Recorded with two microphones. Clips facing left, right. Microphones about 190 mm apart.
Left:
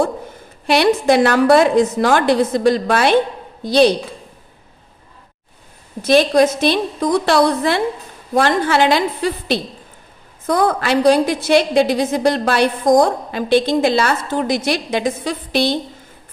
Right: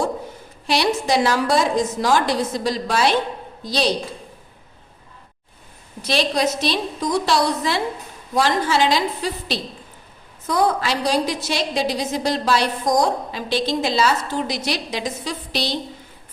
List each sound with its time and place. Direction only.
0.7 s a woman's voice: 55° left (ahead or behind)
6.0 s a woman's voice: 50° left (ahead or behind)